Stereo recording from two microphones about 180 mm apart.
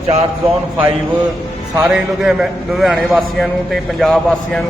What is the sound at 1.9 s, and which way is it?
A man's voice, 5° right (ahead or behind).